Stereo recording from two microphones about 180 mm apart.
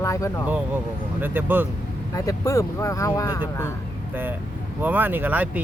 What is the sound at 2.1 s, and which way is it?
Speech, 20° left (ahead or behind).